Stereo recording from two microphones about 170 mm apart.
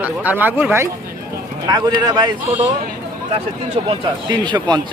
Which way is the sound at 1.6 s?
25° right (ahead or behind).